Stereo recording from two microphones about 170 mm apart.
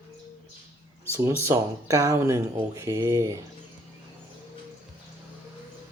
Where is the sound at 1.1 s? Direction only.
15° right (ahead or behind).